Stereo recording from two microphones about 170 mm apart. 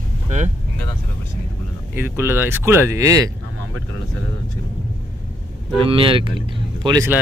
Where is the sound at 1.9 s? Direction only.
15° right (ahead or behind).